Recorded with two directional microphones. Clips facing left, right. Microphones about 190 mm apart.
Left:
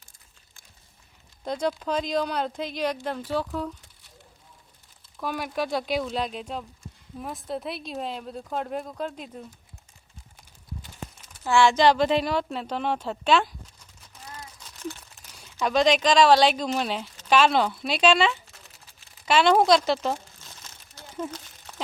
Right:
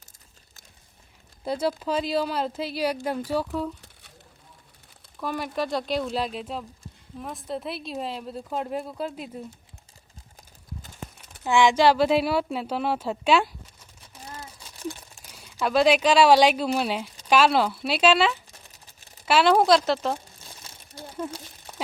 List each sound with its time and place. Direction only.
1.5 s speech: 5° right (ahead or behind)
5.2 s speech: centre (ahead or behind)
11.4 s speech: 15° right (ahead or behind)
14.3 s a sound: 30° right (ahead or behind)
14.6 s a sound: 10° right (ahead or behind)
15.4 s speech: 5° right (ahead or behind)
20.4 s crumpling: 10° right (ahead or behind)
21.1 s speech: 10° right (ahead or behind)